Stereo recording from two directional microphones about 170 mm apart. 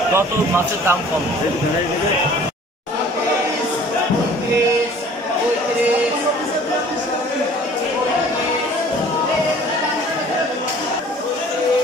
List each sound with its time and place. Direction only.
0.1 s speech: 15° right (ahead or behind)